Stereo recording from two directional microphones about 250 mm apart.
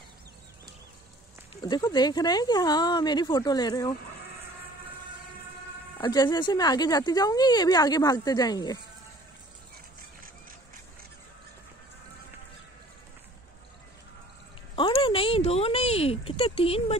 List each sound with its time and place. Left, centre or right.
1.6 s speech: centre
5.9 s speech: centre
14.8 s a sound: centre